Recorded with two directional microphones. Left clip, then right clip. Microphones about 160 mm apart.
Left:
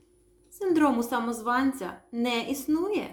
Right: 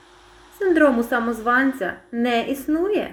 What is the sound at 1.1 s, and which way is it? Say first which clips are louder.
Speech: right 7 dB; 40° left (ahead or behind).